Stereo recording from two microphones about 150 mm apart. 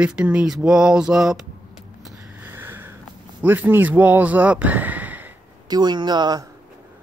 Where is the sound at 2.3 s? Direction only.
15° right (ahead or behind).